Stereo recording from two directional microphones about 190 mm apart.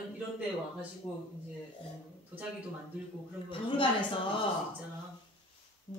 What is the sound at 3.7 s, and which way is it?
Speech, 25° left (ahead or behind).